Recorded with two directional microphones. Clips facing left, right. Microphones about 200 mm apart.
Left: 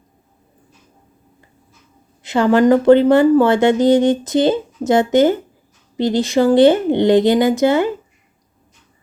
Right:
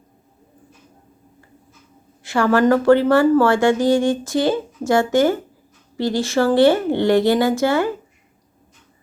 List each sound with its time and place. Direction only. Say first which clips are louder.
2.2 s a woman's voice: left 3 dB; 20° left (ahead or behind)